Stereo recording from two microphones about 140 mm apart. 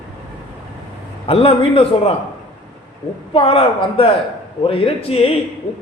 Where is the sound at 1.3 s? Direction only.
45° left (ahead or behind).